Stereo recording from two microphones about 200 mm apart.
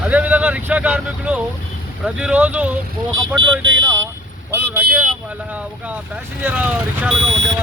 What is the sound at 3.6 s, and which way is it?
Speech, 70° right (ahead or behind).